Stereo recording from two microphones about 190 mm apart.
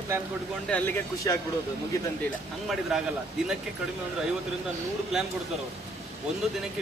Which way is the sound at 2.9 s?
Centre (ahead or behind).